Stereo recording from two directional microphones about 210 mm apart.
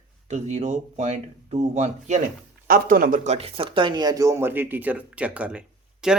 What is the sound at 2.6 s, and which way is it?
Speech, 45° right (ahead or behind).